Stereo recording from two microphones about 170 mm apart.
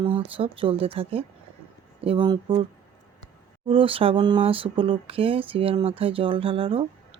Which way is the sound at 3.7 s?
30° right (ahead or behind).